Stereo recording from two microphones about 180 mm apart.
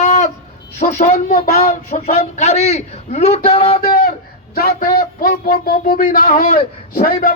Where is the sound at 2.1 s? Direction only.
35° left (ahead or behind).